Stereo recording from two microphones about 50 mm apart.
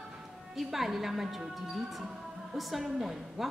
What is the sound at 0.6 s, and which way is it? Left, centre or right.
A woman's voice, centre.